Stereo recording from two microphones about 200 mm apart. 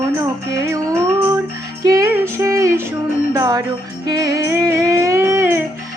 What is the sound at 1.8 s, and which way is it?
Female singing, 15° right (ahead or behind).